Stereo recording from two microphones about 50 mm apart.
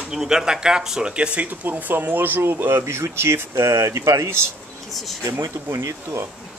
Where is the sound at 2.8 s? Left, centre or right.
Right.